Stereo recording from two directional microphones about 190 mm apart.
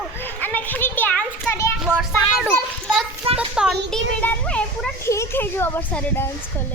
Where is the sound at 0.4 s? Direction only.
10° left (ahead or behind).